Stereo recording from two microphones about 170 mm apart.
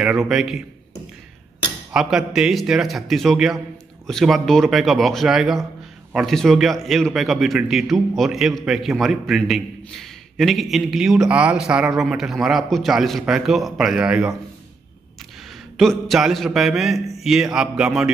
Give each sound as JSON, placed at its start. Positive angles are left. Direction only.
{"t": 0.0, "sound": "a man's voice", "side_deg": -5}
{"t": 1.9, "sound": "a man's voice", "side_deg": -5}
{"t": 15.8, "sound": "a man's voice", "side_deg": 0}